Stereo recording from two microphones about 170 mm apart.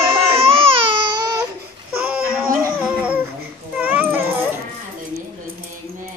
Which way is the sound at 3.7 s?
10° right (ahead or behind).